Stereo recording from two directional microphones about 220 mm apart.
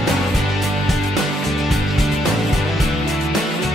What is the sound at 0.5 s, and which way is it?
Music, centre (ahead or behind).